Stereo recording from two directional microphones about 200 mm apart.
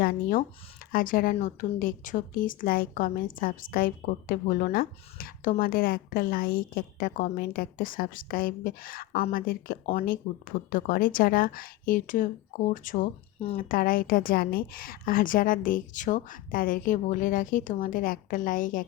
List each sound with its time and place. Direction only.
0.0 s speech: 45° left (ahead or behind)